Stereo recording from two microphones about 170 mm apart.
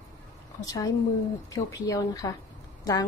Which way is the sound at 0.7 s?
20° left (ahead or behind).